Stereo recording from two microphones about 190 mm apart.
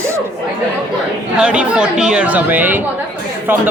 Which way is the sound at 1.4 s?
5° right (ahead or behind).